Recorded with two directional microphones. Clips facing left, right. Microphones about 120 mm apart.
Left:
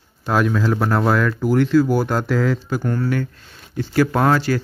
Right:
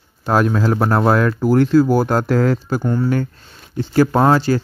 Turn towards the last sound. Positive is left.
turn(degrees=-30)  # may be behind; listen again after turning